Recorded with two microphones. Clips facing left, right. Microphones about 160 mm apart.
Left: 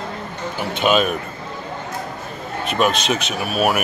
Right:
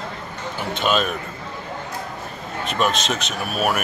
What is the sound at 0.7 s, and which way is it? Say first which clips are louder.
Speech: left 4 dB; 5° left (ahead or behind).